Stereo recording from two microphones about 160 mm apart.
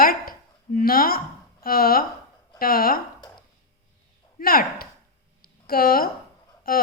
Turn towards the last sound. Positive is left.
turn(degrees=70)  # may be behind; listen again after turning